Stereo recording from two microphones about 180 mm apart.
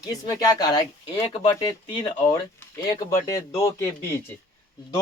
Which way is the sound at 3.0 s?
15° left (ahead or behind).